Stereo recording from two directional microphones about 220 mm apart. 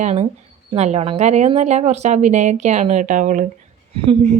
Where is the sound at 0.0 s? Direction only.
30° right (ahead or behind).